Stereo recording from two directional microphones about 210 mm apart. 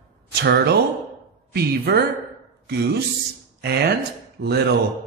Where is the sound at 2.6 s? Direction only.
50° right (ahead or behind).